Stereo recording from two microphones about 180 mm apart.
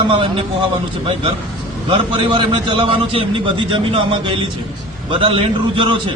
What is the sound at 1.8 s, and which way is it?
A man's voice, 25° right (ahead or behind).